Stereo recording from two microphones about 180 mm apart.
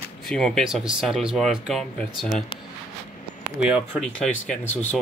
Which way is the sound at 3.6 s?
5° right (ahead or behind).